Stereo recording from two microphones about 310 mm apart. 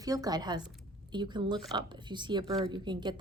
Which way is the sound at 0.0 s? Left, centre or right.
Centre.